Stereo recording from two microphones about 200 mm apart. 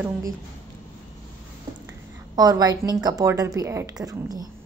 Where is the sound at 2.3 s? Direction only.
20° right (ahead or behind).